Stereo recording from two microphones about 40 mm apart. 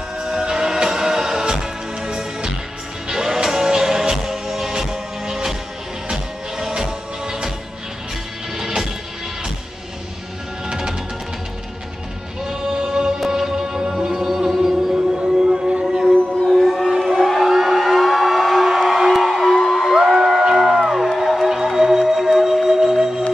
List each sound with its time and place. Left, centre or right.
0.2 s music: centre
6.7 s music: centre
8.5 s music: centre
10.7 s music: centre
12.4 s music: centre
16.3 s a sound: centre
20.1 s music: centre